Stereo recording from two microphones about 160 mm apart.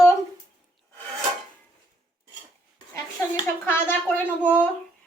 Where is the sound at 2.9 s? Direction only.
15° left (ahead or behind).